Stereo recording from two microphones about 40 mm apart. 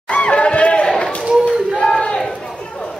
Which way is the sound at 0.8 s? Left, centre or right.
Centre.